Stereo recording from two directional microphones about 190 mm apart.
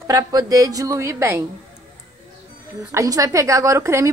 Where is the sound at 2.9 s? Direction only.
15° right (ahead or behind).